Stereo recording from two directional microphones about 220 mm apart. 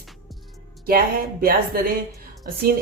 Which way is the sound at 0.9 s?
40° right (ahead or behind).